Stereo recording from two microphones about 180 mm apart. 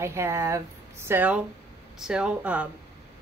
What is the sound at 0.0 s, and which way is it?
Speech, 15° right (ahead or behind).